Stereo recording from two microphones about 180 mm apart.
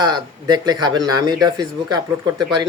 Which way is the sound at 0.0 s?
25° right (ahead or behind).